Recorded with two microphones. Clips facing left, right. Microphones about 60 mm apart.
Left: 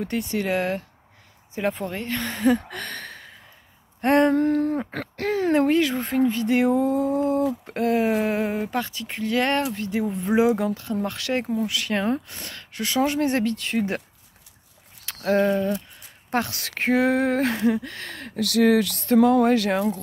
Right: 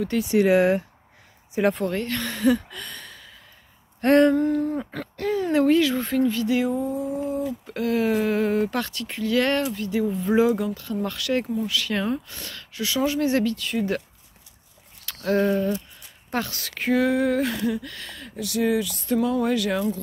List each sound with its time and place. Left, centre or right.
0.2 s speech: centre
1.6 s speech: centre; by 2.6 s left
2.7 s a sound: left
4.0 s speech: left
4.4 s a sound: left
5.5 s speech: left
6.4 s a sound: left
6.7 s a sound: left
7.6 s speech: left
9.1 s speech: left
15.2 s speech: left
18.4 s speech: left
19.4 s speech: left